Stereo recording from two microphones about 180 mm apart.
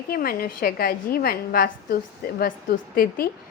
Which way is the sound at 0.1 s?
55° left (ahead or behind).